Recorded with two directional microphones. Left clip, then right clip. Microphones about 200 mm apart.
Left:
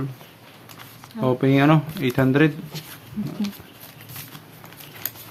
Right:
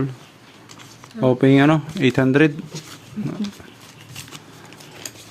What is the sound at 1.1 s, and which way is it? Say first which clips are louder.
Speech: right 4 dB; 25° right (ahead or behind).